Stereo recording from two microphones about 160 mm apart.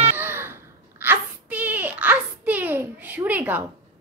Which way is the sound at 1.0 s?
10° right (ahead or behind).